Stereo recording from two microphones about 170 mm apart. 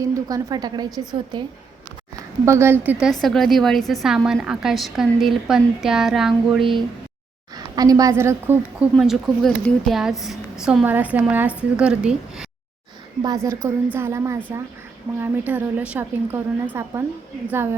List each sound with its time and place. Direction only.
0.0 s a woman's voice: 20° right (ahead or behind)
3.1 s a woman's voice: centre (ahead or behind)
7.5 s a woman's voice: 20° right (ahead or behind)
9.0 s a woman's voice: centre (ahead or behind)
13.2 s speech: 20° right (ahead or behind)